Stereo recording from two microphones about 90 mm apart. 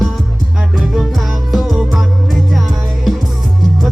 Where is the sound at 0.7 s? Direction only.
Centre (ahead or behind).